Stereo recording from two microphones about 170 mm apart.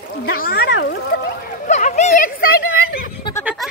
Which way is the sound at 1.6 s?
40° left (ahead or behind).